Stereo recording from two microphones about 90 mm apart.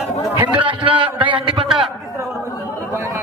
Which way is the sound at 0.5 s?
65° right (ahead or behind).